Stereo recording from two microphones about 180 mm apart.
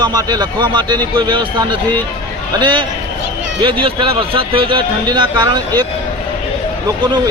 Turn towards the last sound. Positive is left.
turn(degrees=-25)  # may be behind; listen again after turning